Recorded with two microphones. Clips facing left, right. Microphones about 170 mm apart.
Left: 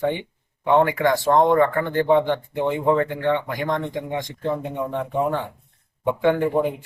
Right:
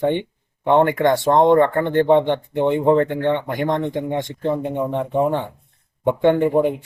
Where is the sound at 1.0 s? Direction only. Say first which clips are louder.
Right 3 dB; 25° right (ahead or behind).